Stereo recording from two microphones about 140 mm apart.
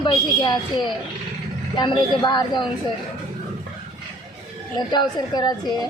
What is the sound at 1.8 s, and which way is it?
Speech, 30° left (ahead or behind).